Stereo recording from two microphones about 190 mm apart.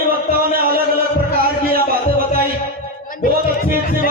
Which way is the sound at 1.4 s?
50° right (ahead or behind).